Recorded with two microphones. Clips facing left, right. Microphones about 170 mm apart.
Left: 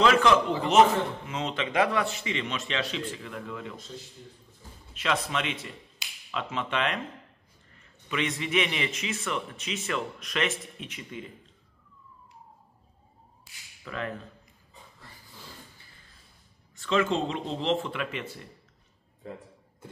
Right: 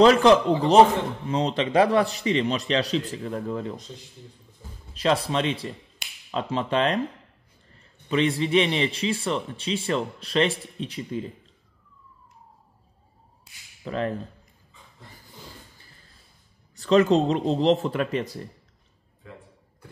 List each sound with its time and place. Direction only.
0.0 s a man's voice: 35° right (ahead or behind)
4.9 s a man's voice: 35° right (ahead or behind)
13.8 s a man's voice: 35° right (ahead or behind)
16.7 s a man's voice: 40° right (ahead or behind)